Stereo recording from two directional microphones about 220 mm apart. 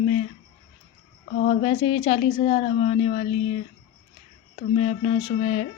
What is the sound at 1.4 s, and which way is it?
Speech, 35° left (ahead or behind).